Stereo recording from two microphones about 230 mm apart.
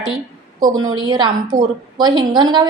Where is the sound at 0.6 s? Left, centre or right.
Centre.